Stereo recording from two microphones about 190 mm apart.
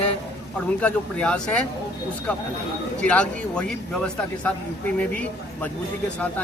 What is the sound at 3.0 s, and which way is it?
A man's voice, 5° left (ahead or behind).